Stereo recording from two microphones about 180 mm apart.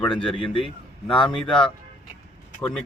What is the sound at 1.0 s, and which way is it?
Speech, 25° left (ahead or behind).